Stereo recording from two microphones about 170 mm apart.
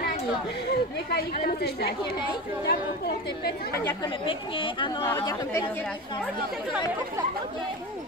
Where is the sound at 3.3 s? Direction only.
70° left (ahead or behind).